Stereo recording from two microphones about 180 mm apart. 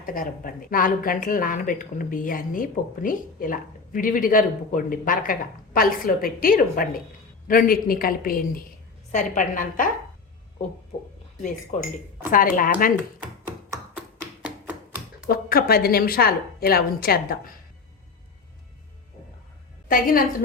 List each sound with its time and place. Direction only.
0.0 s a woman's voice: 50° left (ahead or behind)
10.9 s a woman's voice: 50° left (ahead or behind)
12.3 s a woman's voice: 50° left (ahead or behind)
15.3 s a woman's voice: 55° left (ahead or behind)
19.9 s a woman's voice: 50° left (ahead or behind)